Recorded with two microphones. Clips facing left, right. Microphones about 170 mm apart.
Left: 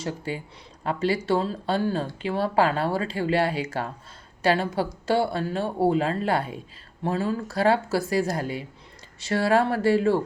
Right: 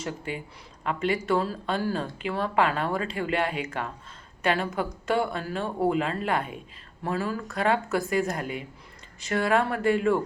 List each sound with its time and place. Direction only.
0.0 s speech: 30° left (ahead or behind)